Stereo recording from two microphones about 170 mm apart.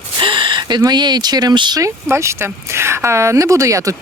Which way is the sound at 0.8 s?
25° right (ahead or behind).